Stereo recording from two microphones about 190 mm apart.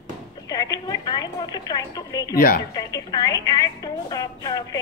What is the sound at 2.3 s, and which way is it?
Speech, 50° left (ahead or behind).